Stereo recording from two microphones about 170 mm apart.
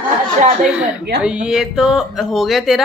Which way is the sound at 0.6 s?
5° right (ahead or behind).